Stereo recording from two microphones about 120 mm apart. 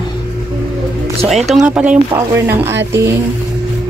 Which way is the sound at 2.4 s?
20° right (ahead or behind).